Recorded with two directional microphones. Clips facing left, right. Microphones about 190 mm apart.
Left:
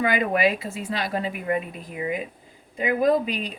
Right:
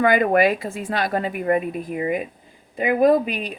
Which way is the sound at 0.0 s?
55° right (ahead or behind).